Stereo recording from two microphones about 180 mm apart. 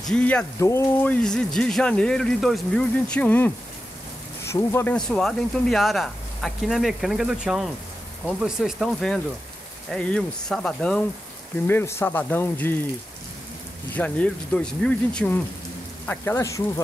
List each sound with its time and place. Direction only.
0.0 s speech: 5° left (ahead or behind)
4.9 s speech: 5° left (ahead or behind)
13.9 s speech: 5° left (ahead or behind)